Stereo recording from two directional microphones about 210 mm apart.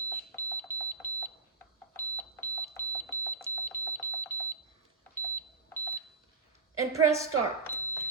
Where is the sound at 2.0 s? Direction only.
10° left (ahead or behind).